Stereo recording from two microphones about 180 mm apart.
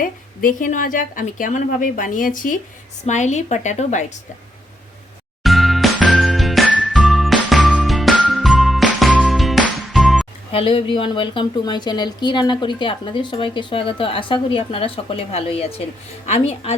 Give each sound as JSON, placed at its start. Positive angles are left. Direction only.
{"t": 0.0, "sound": "a woman's voice", "side_deg": 50}
{"t": 5.4, "sound": "jingle", "side_deg": 0}
{"t": 10.5, "sound": "a woman's voice", "side_deg": 30}